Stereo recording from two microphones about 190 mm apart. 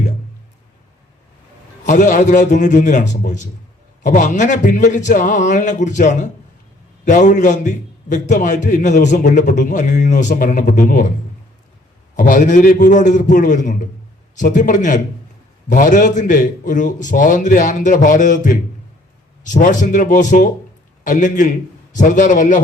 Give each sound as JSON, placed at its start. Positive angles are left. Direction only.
{"t": 1.8, "sound": "a man's voice", "side_deg": 40}
{"t": 12.1, "sound": "a man's voice", "side_deg": 40}